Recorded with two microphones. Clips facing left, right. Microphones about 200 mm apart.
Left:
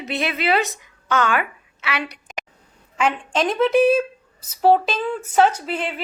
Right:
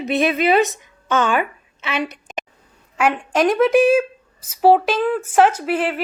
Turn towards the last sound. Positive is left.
turn(degrees=-5)  # may be behind; listen again after turning